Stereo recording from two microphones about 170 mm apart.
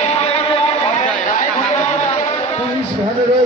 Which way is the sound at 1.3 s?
50° left (ahead or behind).